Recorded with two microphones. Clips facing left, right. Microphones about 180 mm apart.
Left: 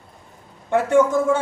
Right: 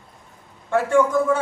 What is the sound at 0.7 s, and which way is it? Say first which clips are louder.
Speech: left 1 dB; 25° left (ahead or behind).